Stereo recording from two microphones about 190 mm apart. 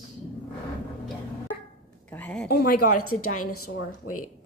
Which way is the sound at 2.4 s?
55° left (ahead or behind).